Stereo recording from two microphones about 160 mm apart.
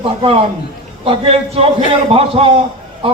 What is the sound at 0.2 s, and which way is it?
A man's voice, 35° right (ahead or behind).